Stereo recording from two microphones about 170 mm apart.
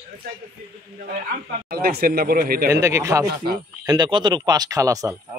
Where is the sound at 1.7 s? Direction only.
60° right (ahead or behind).